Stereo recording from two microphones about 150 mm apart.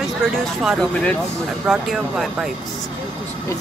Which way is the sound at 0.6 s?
5° left (ahead or behind).